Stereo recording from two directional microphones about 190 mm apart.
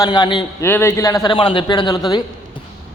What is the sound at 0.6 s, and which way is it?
A man's voice, 10° left (ahead or behind).